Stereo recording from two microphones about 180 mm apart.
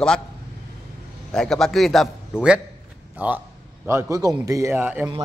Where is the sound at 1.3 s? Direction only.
Centre (ahead or behind).